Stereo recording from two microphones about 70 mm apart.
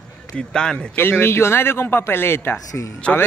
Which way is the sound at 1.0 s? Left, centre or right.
Left.